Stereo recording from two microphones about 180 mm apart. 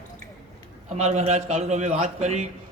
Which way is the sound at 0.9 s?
40° right (ahead or behind).